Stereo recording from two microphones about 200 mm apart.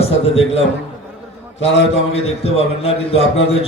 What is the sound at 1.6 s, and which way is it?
Speech, 60° left (ahead or behind).